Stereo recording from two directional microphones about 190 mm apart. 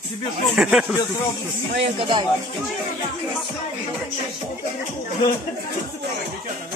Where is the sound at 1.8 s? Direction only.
25° right (ahead or behind).